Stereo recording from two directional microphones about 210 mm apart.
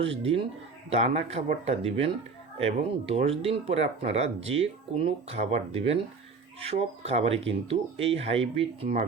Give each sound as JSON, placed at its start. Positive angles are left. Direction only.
{"t": 0.9, "sound": "speech", "side_deg": -30}